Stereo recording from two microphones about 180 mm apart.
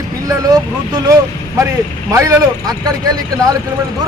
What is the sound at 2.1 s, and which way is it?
Speech, 20° right (ahead or behind).